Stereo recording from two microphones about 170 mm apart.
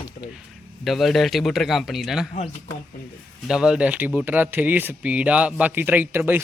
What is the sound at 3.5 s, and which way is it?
Speech, 5° right (ahead or behind).